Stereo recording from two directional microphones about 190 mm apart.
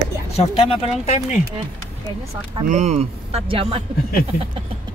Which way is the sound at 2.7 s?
35° right (ahead or behind).